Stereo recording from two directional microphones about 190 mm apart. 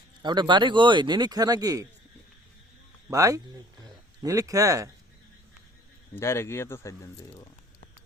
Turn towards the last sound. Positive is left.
turn(degrees=15)  # may be behind; listen again after turning